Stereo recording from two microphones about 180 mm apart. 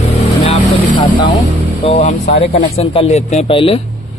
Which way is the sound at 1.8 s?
35° left (ahead or behind).